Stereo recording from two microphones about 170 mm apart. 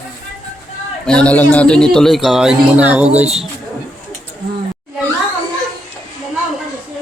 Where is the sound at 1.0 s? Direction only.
5° left (ahead or behind).